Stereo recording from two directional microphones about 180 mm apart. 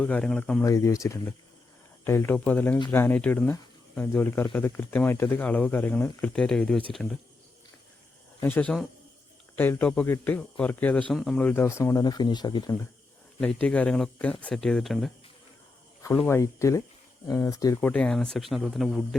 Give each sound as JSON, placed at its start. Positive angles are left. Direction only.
{"t": 0.0, "sound": "speech", "side_deg": 5}
{"t": 0.6, "sound": "speech", "side_deg": 15}
{"t": 8.4, "sound": "speech", "side_deg": 10}
{"t": 13.4, "sound": "speech", "side_deg": 5}
{"t": 16.1, "sound": "speech", "side_deg": 10}
{"t": 17.7, "sound": "speech", "side_deg": 5}